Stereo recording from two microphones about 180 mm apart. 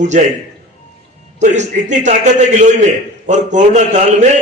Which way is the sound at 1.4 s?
40° right (ahead or behind).